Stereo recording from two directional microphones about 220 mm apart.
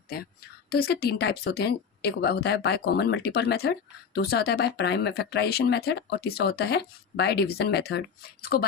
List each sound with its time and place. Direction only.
0.7 s speech: 45° left (ahead or behind)